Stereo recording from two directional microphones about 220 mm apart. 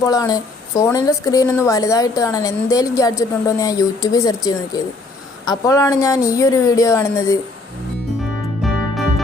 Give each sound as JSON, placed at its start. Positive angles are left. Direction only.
{"t": 0.0, "sound": "a woman's voice", "side_deg": 15}
{"t": 8.6, "sound": "music", "side_deg": 0}